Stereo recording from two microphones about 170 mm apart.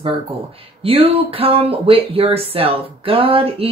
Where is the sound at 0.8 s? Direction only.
35° right (ahead or behind).